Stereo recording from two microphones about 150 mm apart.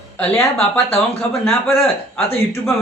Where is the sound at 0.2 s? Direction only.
10° left (ahead or behind).